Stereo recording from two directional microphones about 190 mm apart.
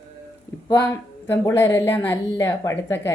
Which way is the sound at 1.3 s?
15° left (ahead or behind).